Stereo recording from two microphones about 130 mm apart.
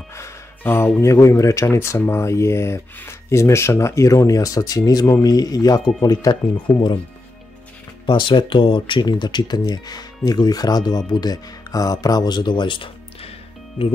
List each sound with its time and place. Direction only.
0.1 s speech: 20° left (ahead or behind)
8.1 s speech: 35° left (ahead or behind)